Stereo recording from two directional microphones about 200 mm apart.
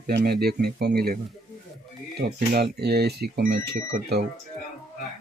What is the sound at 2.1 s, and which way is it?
Speech, 55° right (ahead or behind).